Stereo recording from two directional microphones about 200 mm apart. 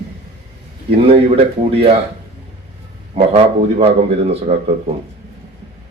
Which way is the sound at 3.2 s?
30° right (ahead or behind).